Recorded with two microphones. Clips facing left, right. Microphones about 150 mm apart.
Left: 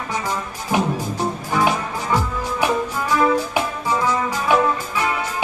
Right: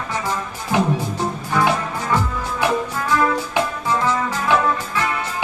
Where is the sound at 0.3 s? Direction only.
10° left (ahead or behind).